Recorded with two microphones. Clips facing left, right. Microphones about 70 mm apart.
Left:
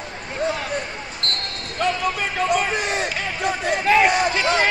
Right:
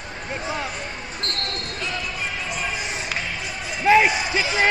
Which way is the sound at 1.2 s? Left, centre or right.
Right.